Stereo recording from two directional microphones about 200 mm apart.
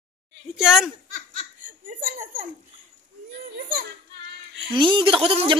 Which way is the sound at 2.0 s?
45° right (ahead or behind).